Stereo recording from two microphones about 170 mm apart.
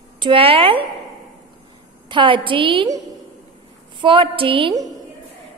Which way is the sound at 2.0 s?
30° right (ahead or behind).